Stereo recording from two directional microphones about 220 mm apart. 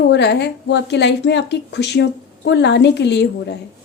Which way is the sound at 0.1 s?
50° left (ahead or behind).